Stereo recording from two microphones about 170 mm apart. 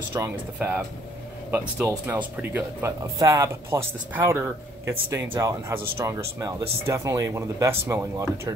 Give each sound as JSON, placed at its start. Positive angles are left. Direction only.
{"t": 0.1, "sound": "speech", "side_deg": -10}